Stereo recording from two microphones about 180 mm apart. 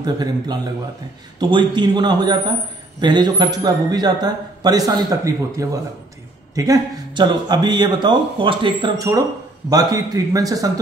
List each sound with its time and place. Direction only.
0.0 s a man's voice: 20° right (ahead or behind)